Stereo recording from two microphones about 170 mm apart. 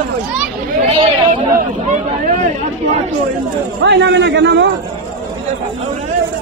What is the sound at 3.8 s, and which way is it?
Speech, 90° right.